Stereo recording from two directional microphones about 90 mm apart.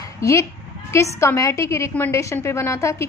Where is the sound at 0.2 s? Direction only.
35° left (ahead or behind).